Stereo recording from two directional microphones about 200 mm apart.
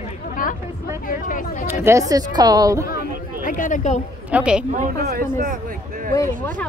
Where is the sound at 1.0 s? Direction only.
40° left (ahead or behind).